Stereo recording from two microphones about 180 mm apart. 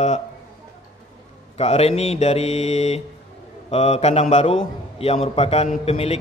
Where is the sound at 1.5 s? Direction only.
35° left (ahead or behind).